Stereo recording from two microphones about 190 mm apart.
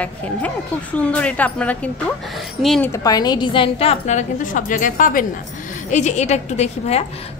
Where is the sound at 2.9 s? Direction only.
20° left (ahead or behind).